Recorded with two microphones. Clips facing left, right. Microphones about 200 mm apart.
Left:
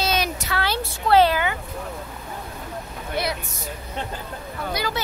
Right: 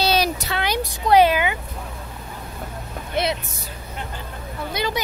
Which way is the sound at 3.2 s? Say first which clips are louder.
Right 4 dB; 20° right (ahead or behind).